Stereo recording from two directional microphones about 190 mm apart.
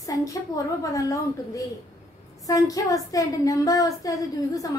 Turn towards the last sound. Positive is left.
turn(degrees=15)  # may be behind; listen again after turning